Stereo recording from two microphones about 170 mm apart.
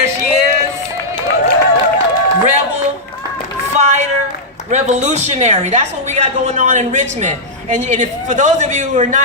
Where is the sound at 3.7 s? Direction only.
45° right (ahead or behind).